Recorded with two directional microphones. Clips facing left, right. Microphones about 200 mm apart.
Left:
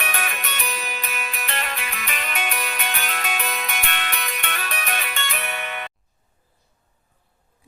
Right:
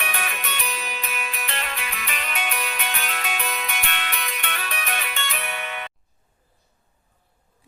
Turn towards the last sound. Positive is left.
turn(degrees=50)  # may be behind; listen again after turning